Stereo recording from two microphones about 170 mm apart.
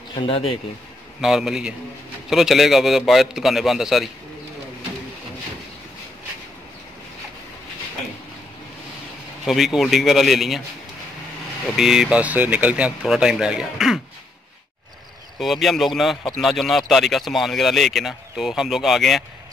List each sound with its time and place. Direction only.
0.1 s speech: 35° left (ahead or behind)
1.2 s speech: 5° right (ahead or behind)
9.5 s speech: centre (ahead or behind)
11.7 s speech: 5° right (ahead or behind)
15.3 s speech: centre (ahead or behind)